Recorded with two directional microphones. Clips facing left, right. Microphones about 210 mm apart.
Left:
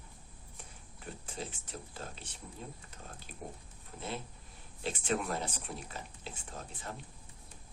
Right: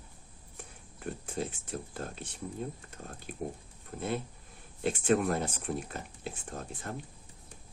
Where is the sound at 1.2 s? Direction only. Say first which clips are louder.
Right 6 dB; 55° right (ahead or behind).